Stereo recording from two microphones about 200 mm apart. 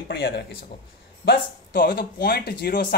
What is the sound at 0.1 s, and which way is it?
Speech, 55° left (ahead or behind).